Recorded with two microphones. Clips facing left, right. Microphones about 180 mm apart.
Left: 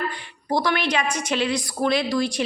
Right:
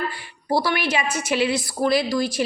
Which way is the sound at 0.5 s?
5° right (ahead or behind).